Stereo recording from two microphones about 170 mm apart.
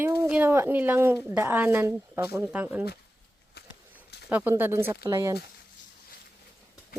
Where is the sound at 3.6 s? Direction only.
70° left (ahead or behind).